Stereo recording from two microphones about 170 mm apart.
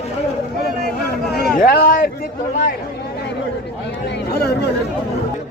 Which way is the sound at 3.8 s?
80° left.